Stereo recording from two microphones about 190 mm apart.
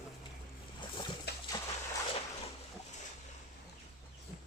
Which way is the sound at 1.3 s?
60° left (ahead or behind).